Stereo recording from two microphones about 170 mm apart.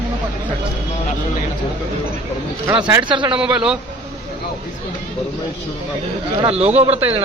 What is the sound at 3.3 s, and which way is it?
Speech, 5° right (ahead or behind).